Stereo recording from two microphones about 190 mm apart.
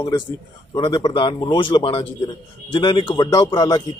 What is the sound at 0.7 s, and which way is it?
A man's voice, 25° left (ahead or behind).